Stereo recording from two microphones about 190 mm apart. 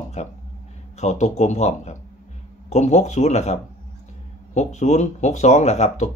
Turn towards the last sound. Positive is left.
turn(degrees=35)  # may be behind; listen again after turning